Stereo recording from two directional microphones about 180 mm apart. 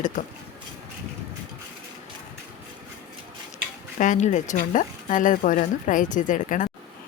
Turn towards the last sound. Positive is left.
turn(degrees=45)  # may be behind; listen again after turning